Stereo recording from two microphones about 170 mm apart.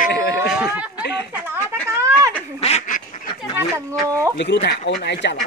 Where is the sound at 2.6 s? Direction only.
40° left (ahead or behind).